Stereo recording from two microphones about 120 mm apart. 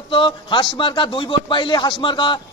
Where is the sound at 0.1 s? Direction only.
45° left (ahead or behind).